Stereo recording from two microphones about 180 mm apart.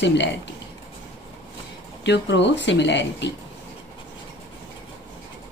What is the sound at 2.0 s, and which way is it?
A woman's voice, 75° left (ahead or behind).